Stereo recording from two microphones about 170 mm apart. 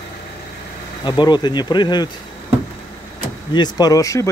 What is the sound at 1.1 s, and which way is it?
Speech, 25° left (ahead or behind).